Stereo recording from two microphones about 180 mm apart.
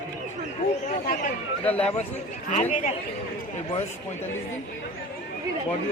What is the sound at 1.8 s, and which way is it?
A man's voice, 35° left (ahead or behind).